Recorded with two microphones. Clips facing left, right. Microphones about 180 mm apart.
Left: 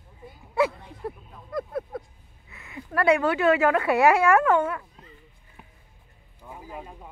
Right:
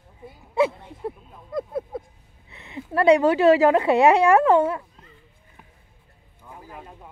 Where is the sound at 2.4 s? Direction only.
25° right (ahead or behind).